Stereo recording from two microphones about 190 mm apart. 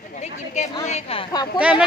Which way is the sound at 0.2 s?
40° left (ahead or behind).